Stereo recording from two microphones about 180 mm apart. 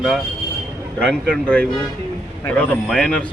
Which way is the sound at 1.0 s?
5° left (ahead or behind).